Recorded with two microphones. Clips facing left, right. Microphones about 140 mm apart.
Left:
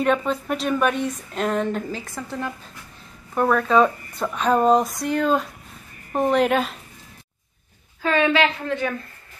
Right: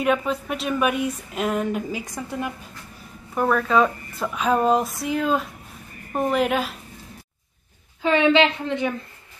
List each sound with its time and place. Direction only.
0.0 s a woman's voice: 5° right (ahead or behind)
3.3 s speech: centre (ahead or behind)
8.0 s a woman's voice: 20° right (ahead or behind)